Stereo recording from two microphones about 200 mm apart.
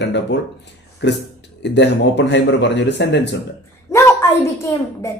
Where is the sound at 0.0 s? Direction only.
60° left (ahead or behind).